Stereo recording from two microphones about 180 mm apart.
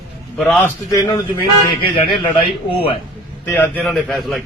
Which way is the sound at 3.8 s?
Centre (ahead or behind).